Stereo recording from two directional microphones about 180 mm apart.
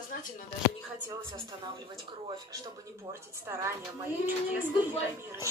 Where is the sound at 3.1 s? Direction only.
15° right (ahead or behind).